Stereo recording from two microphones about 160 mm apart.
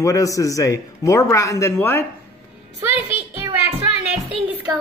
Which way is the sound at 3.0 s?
15° right (ahead or behind).